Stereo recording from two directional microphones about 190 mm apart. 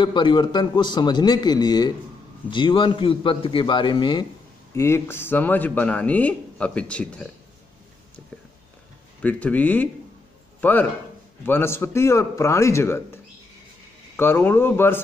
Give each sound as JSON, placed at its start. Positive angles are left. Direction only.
{"t": 0.0, "sound": "a man's voice", "side_deg": 25}
{"t": 9.2, "sound": "a man's voice", "side_deg": 10}